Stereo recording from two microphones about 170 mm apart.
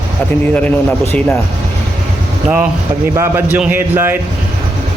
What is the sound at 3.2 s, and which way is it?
A man's voice, 10° right (ahead or behind).